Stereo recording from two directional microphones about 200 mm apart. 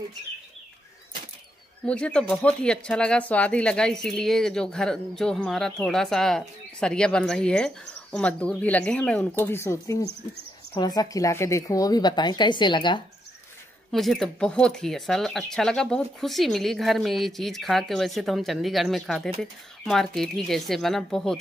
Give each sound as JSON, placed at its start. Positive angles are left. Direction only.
{"t": 1.9, "sound": "a woman's voice", "side_deg": 5}
{"t": 13.9, "sound": "speech", "side_deg": 0}